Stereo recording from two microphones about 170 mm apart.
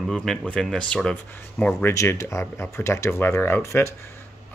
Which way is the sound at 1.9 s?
20° left (ahead or behind).